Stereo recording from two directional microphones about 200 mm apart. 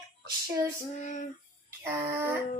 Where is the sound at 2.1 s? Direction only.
10° right (ahead or behind).